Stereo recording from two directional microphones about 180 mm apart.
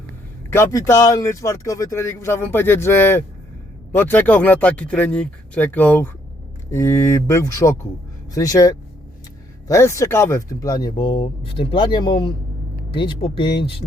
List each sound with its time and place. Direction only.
0.5 s speech: 15° left (ahead or behind)